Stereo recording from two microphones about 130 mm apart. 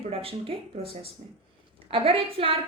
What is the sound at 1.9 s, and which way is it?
Speech, 45° right (ahead or behind).